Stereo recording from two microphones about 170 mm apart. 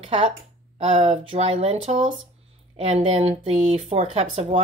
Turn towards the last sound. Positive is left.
turn(degrees=-40)  # may be behind; listen again after turning